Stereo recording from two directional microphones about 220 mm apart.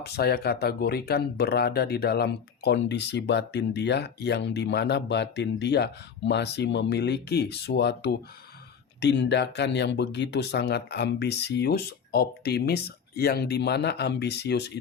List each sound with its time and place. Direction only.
0.0 s speech: 45° left (ahead or behind)